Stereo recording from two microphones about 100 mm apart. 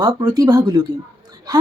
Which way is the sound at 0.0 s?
45° right (ahead or behind).